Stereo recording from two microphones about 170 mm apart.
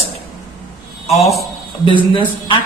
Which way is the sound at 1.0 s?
40° left (ahead or behind).